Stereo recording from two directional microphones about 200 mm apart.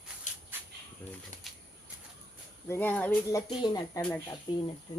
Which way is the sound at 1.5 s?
Centre (ahead or behind).